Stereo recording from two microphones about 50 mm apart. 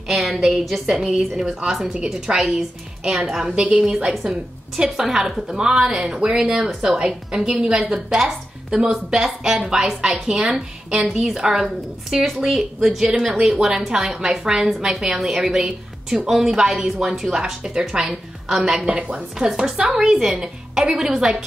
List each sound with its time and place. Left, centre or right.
0.1 s a woman's voice: centre
18.9 s a woman's voice: right
19.3 s a woman's voice: centre